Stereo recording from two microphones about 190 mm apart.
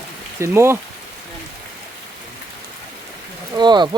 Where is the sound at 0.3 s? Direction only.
15° right (ahead or behind).